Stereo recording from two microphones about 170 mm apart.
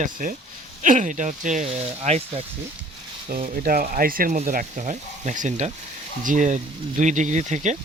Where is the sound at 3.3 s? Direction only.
55° right (ahead or behind).